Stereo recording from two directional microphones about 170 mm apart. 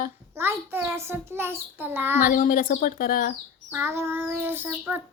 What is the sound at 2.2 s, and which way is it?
Speech, 50° left (ahead or behind).